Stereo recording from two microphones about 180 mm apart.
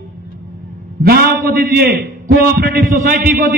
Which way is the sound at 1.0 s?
60° right (ahead or behind).